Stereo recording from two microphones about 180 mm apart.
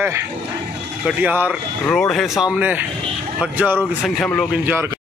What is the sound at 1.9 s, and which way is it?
Speech, 5° left (ahead or behind).